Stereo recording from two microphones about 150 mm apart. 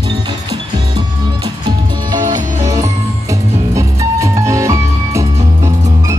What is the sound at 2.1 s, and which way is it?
Music, 60° right (ahead or behind).